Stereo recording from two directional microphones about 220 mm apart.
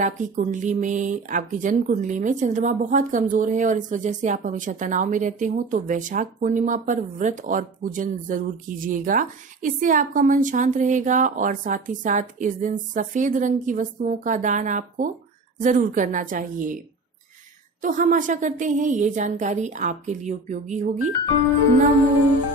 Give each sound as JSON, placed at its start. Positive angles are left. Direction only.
{"t": 0.0, "sound": "speech", "side_deg": -35}
{"t": 17.8, "sound": "speech", "side_deg": -35}